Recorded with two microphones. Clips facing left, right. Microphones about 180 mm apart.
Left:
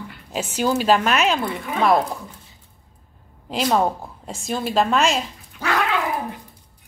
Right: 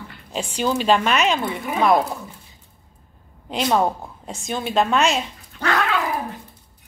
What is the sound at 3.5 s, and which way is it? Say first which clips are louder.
A woman's voice: even; centre (ahead or behind).